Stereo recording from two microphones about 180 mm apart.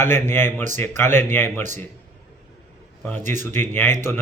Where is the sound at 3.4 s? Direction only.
10° left (ahead or behind).